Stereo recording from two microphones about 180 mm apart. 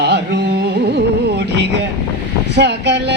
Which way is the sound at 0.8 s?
65° right (ahead or behind).